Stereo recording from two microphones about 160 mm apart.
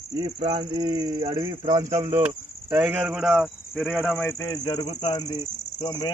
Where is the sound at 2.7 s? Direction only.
10° right (ahead or behind).